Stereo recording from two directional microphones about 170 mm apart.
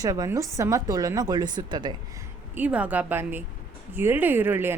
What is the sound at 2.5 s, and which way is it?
Speech, 10° right (ahead or behind).